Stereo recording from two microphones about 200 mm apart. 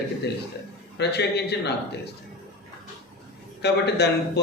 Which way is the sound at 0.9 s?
55° left (ahead or behind).